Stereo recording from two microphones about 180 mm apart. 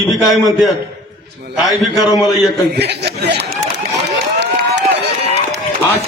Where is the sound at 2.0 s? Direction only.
20° left (ahead or behind).